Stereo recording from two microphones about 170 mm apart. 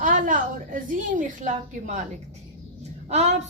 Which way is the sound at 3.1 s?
40° right (ahead or behind).